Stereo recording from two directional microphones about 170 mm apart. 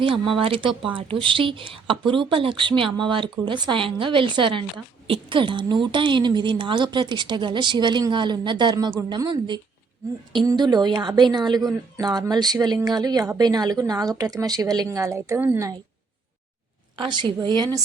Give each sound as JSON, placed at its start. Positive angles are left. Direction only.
{"t": 0.0, "sound": "a woman's voice", "side_deg": -30}
{"t": 17.0, "sound": "a woman's voice", "side_deg": -25}